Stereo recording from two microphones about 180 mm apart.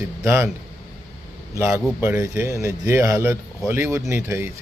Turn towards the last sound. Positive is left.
turn(degrees=-15)  # may be behind; listen again after turning